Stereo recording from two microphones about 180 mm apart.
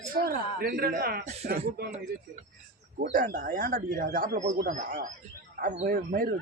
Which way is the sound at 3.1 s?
50° right (ahead or behind).